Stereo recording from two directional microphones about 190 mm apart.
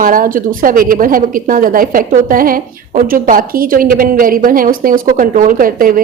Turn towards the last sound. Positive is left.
turn(degrees=-45)  # may be behind; listen again after turning